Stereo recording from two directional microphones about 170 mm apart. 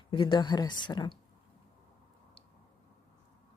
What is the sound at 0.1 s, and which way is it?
Speech, 30° left (ahead or behind).